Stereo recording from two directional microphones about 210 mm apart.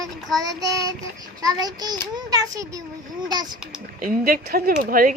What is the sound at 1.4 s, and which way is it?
A child's voice, 20° right (ahead or behind).